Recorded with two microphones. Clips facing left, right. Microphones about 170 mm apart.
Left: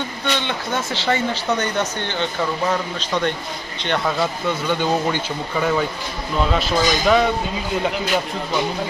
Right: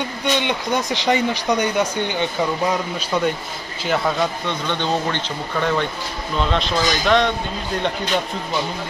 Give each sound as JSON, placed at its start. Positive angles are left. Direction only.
{"t": 0.4, "sound": "speech", "side_deg": -15}